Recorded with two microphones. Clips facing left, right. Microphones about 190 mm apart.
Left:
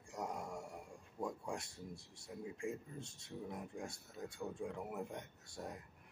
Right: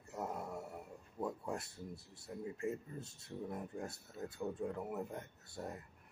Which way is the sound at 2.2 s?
5° right (ahead or behind).